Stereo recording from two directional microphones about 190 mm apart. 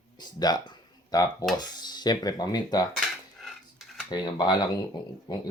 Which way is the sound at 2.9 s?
Centre (ahead or behind).